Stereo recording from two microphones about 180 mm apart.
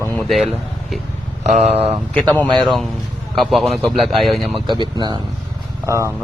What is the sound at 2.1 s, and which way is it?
Speech, 10° left (ahead or behind).